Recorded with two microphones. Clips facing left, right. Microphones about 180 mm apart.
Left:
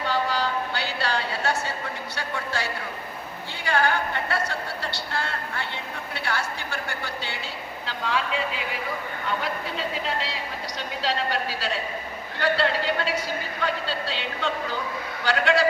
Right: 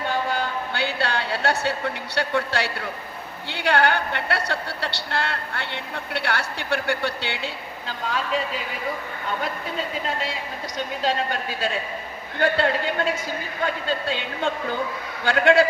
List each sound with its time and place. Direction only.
0.1 s a sound: 55° right (ahead or behind)
2.1 s speech: 70° right (ahead or behind)
7.9 s a man's voice: 40° right (ahead or behind)
11.0 s a man's voice: 50° right (ahead or behind)